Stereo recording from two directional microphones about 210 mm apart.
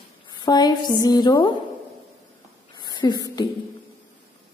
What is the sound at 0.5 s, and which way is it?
A woman's voice, 20° left (ahead or behind).